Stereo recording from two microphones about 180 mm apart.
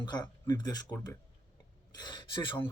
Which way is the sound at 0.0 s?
25° left (ahead or behind).